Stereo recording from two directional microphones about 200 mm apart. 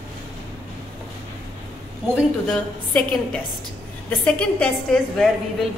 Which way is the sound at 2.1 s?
Centre (ahead or behind).